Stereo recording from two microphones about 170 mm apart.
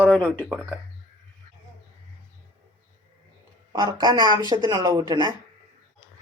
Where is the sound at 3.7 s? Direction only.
25° right (ahead or behind).